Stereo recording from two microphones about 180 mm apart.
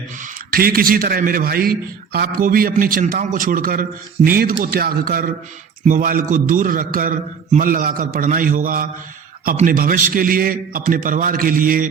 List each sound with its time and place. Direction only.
0.2 s a man's voice: 55° right (ahead or behind)